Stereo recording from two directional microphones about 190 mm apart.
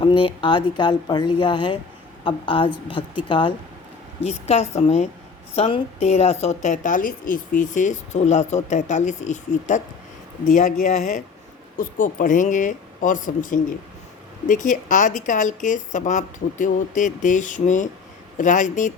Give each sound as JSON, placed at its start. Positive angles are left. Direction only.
{"t": 0.0, "sound": "a woman's voice", "side_deg": 25}